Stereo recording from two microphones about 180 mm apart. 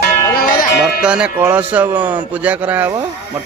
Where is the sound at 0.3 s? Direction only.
50° left (ahead or behind).